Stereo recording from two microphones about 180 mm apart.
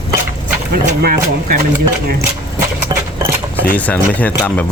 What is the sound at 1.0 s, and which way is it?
Speech, 55° right (ahead or behind).